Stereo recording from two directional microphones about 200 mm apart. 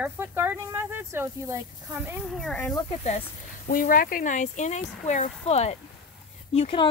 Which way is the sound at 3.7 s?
45° left (ahead or behind).